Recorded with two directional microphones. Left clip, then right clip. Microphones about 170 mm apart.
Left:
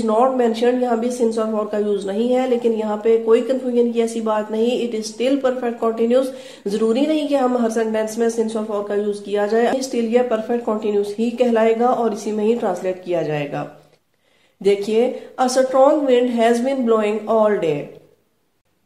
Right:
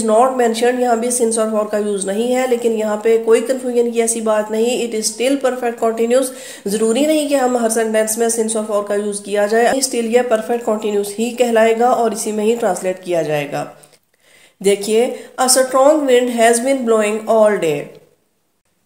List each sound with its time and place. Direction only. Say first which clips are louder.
0.0 s speech: right 3 dB; 40° right (ahead or behind)